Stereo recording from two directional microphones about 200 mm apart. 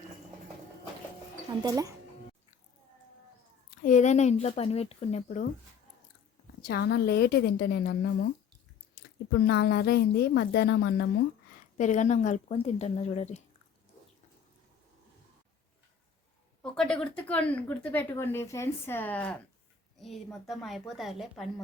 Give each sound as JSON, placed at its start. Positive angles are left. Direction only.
{"t": 1.6, "sound": "speech", "side_deg": -15}
{"t": 3.8, "sound": "speech", "side_deg": 35}
{"t": 6.7, "sound": "a woman's voice", "side_deg": 50}
{"t": 9.5, "sound": "a woman's voice", "side_deg": 55}
{"t": 11.8, "sound": "speech", "side_deg": 35}
{"t": 16.7, "sound": "a woman's voice", "side_deg": 5}